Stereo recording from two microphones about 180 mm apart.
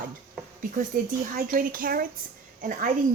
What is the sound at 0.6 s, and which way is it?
Speech, 45° right (ahead or behind).